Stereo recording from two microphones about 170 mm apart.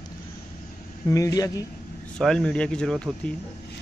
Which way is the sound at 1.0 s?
20° left (ahead or behind).